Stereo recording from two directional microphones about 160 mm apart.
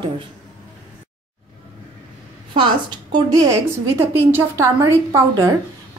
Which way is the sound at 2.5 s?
30° right (ahead or behind).